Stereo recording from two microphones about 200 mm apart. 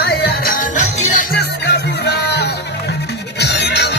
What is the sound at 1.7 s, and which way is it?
Music, 55° left (ahead or behind).